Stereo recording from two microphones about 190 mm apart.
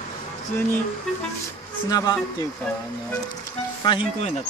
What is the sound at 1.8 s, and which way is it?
Speech, 20° left (ahead or behind).